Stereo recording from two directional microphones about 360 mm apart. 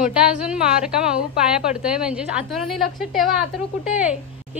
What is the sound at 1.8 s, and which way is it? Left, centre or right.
A woman's voice, centre.